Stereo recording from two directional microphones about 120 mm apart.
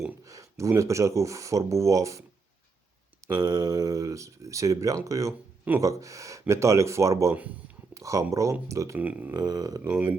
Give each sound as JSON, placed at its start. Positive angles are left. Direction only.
{"t": 0.3, "sound": "speech", "side_deg": -25}
{"t": 3.2, "sound": "speech", "side_deg": -35}
{"t": 9.0, "sound": "speech", "side_deg": -15}
{"t": 9.3, "sound": "a sound", "side_deg": -30}